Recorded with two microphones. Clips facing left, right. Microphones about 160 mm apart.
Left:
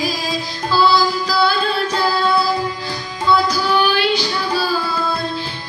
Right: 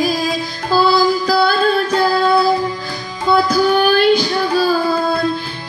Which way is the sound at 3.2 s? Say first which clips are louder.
Right 3 dB; 50° right (ahead or behind).